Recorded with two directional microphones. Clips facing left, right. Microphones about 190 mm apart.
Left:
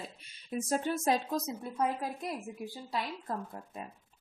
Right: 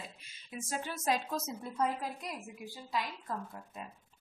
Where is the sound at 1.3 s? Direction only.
15° left (ahead or behind).